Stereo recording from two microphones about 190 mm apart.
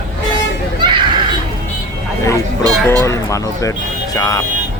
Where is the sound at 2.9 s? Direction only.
15° left (ahead or behind).